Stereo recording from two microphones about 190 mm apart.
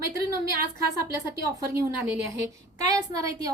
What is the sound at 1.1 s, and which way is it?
Speech, 15° right (ahead or behind).